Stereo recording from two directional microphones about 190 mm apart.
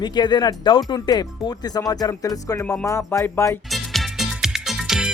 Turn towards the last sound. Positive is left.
turn(degrees=-5)  # may be behind; listen again after turning